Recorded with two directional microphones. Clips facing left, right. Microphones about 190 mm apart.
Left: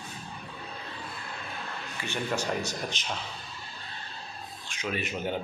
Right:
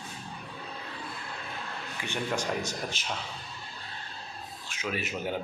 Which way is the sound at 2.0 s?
15° right (ahead or behind).